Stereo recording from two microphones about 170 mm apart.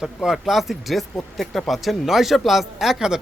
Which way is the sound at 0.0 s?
Centre (ahead or behind).